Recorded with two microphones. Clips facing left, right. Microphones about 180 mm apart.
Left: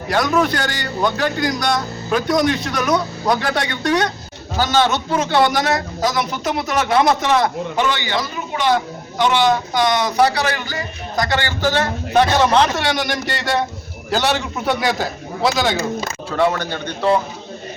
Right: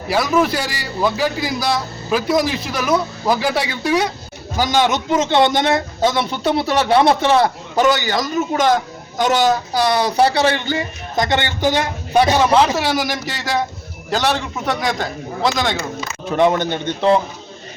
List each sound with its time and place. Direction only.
0.1 s a man's voice: 5° right (ahead or behind)
16.3 s a man's voice: 20° right (ahead or behind)